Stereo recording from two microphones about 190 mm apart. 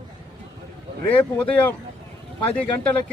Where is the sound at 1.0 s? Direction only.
10° left (ahead or behind).